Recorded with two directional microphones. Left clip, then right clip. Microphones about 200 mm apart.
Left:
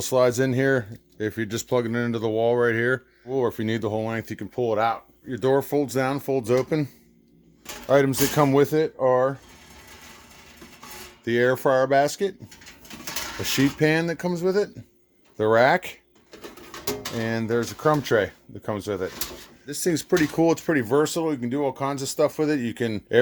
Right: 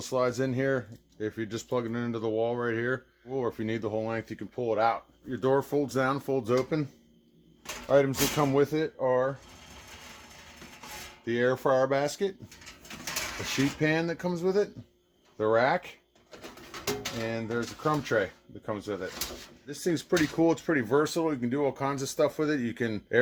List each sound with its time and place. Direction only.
0.0 s speech: 50° left (ahead or behind)
7.9 s speech: 50° left (ahead or behind)
11.3 s speech: 40° left (ahead or behind)
13.4 s speech: 45° left (ahead or behind); by 14.7 s 30° left (ahead or behind)
15.4 s speech: 50° left (ahead or behind)
17.2 s speech: 50° left (ahead or behind); by 23.1 s 30° left (ahead or behind)